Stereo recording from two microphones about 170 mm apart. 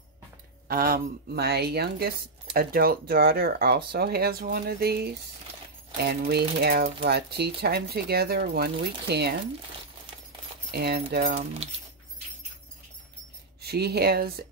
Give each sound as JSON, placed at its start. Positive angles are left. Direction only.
{"t": 0.7, "sound": "a woman's voice", "side_deg": -60}
{"t": 10.7, "sound": "a woman's voice", "side_deg": -70}
{"t": 11.3, "sound": "speech", "side_deg": -35}
{"t": 13.6, "sound": "speech", "side_deg": -70}